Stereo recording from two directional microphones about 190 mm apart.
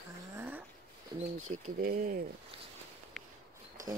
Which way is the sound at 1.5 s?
35° right (ahead or behind).